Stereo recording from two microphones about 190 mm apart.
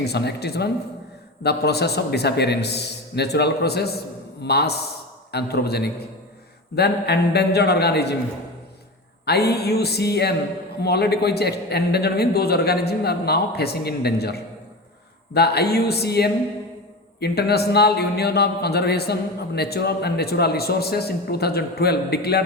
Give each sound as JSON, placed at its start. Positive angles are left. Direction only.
{"t": 0.0, "sound": "a man's voice", "side_deg": 60}
{"t": 9.2, "sound": "a man's voice", "side_deg": 60}